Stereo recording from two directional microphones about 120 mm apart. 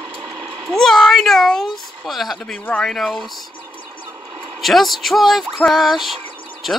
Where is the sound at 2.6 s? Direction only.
15° left (ahead or behind).